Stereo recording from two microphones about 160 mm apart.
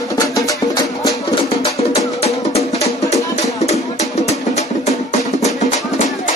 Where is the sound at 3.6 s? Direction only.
45° left (ahead or behind).